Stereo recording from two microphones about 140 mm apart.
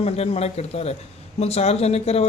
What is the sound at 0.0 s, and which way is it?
Speech, 45° left (ahead or behind).